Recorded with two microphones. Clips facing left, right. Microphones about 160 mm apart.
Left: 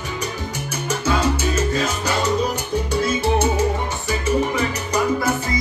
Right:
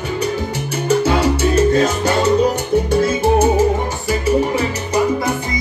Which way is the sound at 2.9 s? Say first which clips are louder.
Right 3 dB; 50° right (ahead or behind).